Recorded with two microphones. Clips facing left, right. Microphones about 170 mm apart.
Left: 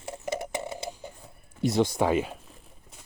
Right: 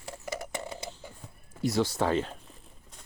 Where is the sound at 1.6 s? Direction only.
20° left (ahead or behind).